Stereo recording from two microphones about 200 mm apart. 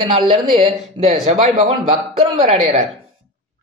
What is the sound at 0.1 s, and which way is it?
Speech, 30° right (ahead or behind).